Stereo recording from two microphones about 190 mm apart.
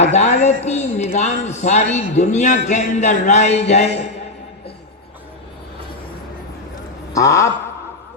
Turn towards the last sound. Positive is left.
turn(degrees=15)  # may be behind; listen again after turning